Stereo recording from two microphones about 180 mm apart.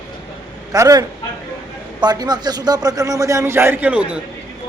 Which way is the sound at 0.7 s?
20° right (ahead or behind).